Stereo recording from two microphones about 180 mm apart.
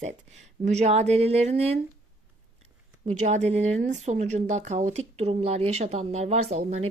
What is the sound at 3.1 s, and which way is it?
Speech, 40° right (ahead or behind).